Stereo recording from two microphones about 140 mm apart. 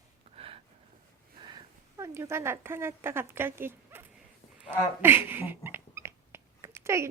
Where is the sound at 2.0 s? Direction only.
20° right (ahead or behind).